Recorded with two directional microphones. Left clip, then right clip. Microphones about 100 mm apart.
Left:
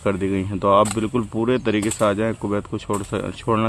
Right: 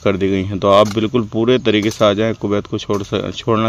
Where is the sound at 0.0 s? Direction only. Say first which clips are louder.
Right 6 dB; 40° right (ahead or behind).